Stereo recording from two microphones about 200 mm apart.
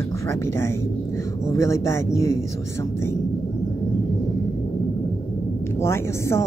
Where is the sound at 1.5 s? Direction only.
15° left (ahead or behind).